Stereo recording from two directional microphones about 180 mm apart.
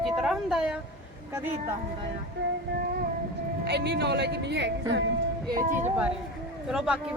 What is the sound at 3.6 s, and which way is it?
Speech, 70° right (ahead or behind).